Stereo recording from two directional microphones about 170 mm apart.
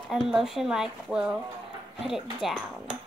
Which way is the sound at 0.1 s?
Centre (ahead or behind).